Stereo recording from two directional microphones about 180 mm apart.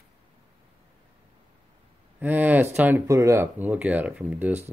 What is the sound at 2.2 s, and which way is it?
Speech, 10° right (ahead or behind).